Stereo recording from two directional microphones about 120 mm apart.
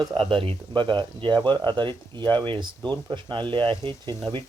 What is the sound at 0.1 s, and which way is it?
Speech, 45° right (ahead or behind).